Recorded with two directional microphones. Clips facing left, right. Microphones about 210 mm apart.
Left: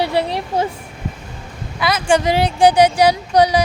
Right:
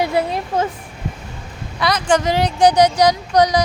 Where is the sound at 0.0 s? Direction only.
30° left (ahead or behind).